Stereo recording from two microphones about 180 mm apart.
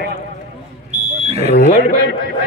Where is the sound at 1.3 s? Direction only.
35° right (ahead or behind).